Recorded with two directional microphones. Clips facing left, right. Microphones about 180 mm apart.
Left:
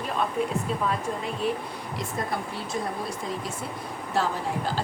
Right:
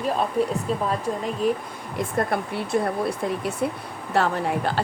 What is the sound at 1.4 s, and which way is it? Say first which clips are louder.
Speech: right 5 dB; 40° right (ahead or behind).